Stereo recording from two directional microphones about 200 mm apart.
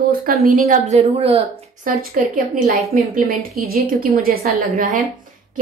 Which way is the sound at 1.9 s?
45° right (ahead or behind).